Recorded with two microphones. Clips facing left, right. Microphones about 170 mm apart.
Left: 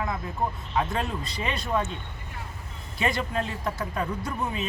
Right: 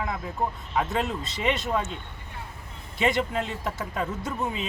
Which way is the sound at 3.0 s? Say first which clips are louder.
Right 2 dB; 20° right (ahead or behind).